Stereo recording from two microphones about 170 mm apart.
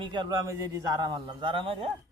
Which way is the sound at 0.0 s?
25° right (ahead or behind).